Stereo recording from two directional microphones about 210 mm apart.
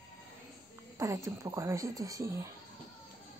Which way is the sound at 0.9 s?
15° right (ahead or behind).